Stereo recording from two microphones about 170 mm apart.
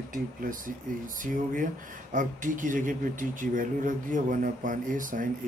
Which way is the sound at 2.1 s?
50° right (ahead or behind).